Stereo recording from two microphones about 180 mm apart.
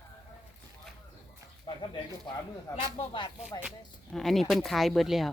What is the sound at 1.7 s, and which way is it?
Bird, 30° left (ahead or behind).